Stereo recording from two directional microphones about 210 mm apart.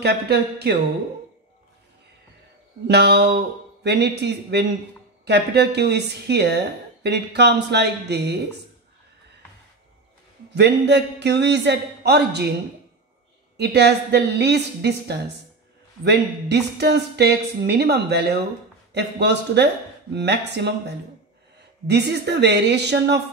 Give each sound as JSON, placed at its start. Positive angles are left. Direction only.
{"t": 0.0, "sound": "a woman's voice", "side_deg": -50}
{"t": 2.9, "sound": "a woman's voice", "side_deg": -50}
{"t": 10.5, "sound": "speech", "side_deg": -55}
{"t": 13.6, "sound": "a woman's voice", "side_deg": -55}
{"t": 21.8, "sound": "a woman's voice", "side_deg": -55}